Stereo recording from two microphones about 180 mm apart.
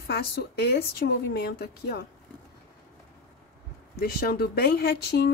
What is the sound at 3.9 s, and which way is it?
A woman's voice, 55° left (ahead or behind).